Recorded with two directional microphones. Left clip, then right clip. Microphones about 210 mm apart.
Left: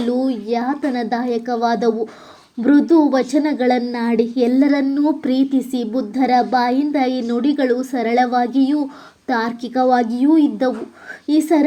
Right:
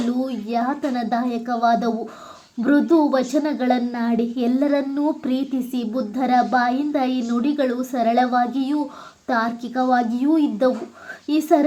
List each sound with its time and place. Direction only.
0.3 s a woman's voice: 15° left (ahead or behind)